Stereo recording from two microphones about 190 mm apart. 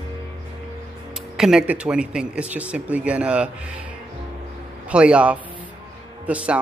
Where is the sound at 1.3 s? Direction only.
5° right (ahead or behind).